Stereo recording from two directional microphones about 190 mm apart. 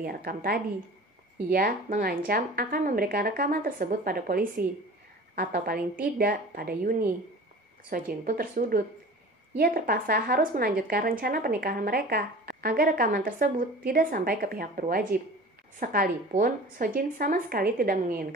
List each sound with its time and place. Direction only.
0.0 s speech: 50° right (ahead or behind)